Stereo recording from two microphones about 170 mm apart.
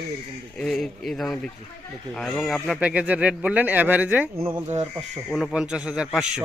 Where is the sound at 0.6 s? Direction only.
Centre (ahead or behind).